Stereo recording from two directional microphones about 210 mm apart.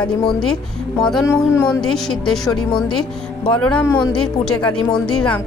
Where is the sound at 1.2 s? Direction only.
15° left (ahead or behind).